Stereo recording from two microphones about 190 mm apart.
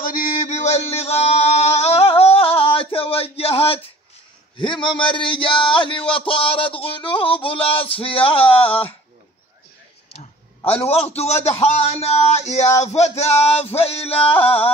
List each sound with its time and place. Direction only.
0.0 s chant: 45° left (ahead or behind)
4.6 s a man's voice: 25° left (ahead or behind)
10.1 s a man's voice: 30° left (ahead or behind)